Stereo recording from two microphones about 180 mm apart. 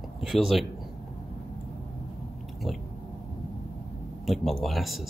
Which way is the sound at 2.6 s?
Centre (ahead or behind).